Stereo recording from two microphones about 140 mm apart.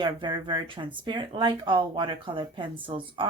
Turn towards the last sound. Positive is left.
turn(degrees=-35)  # may be behind; listen again after turning